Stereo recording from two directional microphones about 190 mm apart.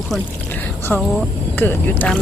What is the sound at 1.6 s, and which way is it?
Speech, 10° left (ahead or behind).